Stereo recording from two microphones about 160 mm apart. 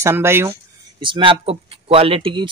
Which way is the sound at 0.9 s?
30° right (ahead or behind).